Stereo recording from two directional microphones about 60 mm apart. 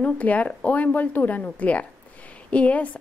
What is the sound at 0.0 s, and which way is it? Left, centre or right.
A woman's voice, left.